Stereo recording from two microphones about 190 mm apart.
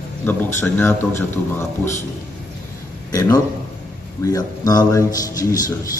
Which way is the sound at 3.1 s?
20° left (ahead or behind).